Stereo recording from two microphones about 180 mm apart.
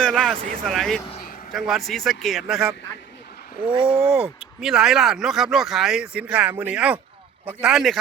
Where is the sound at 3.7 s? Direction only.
30° right (ahead or behind).